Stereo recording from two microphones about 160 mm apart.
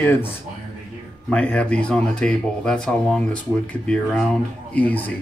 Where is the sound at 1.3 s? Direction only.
5° left (ahead or behind).